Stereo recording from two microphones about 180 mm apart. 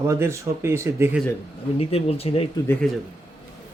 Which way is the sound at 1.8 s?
35° left (ahead or behind).